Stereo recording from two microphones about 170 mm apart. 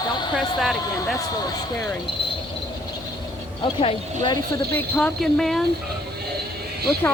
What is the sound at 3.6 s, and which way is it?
Speech, 30° left (ahead or behind).